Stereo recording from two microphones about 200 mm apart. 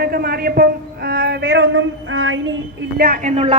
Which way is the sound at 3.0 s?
45° right (ahead or behind).